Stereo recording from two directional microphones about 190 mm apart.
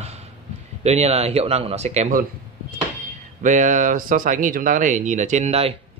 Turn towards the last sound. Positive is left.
turn(degrees=-30)  # may be behind; listen again after turning